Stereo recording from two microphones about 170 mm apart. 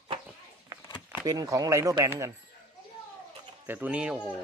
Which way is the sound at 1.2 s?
20° right (ahead or behind).